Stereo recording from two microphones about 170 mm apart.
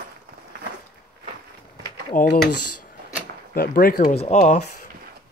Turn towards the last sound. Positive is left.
turn(degrees=45)  # may be behind; listen again after turning